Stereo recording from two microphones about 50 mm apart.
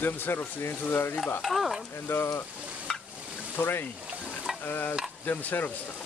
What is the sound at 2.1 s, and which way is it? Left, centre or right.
Speech, left.